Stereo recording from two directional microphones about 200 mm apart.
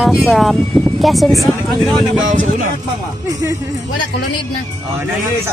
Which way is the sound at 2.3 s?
40° right (ahead or behind).